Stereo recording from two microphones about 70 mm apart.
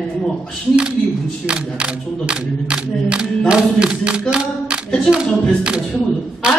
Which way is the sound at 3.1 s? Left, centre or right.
Centre.